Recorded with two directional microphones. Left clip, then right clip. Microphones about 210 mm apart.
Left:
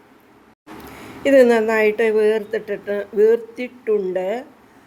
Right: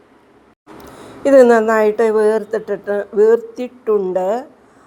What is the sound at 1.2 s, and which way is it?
A woman's voice, 15° right (ahead or behind).